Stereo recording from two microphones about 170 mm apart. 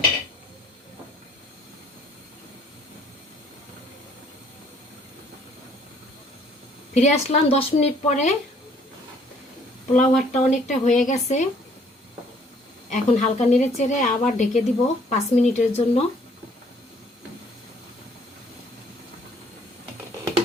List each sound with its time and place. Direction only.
6.9 s a woman's voice: 40° left (ahead or behind)
9.9 s a woman's voice: 45° left (ahead or behind)
12.9 s a woman's voice: 45° left (ahead or behind)